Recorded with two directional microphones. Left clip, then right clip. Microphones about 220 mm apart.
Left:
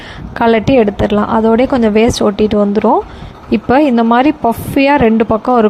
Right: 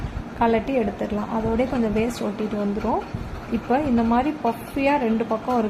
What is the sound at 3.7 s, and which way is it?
A woman's voice, 40° left (ahead or behind).